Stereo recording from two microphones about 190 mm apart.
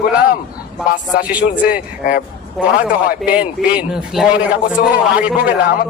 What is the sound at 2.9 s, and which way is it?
Speech, 50° left (ahead or behind).